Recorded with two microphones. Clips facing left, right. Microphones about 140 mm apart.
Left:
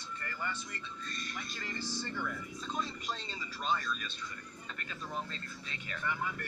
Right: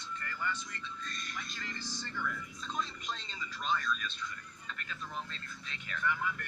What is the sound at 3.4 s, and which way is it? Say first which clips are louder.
Speech: even; 35° left (ahead or behind).